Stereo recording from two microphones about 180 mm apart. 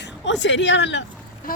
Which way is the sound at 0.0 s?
85° left.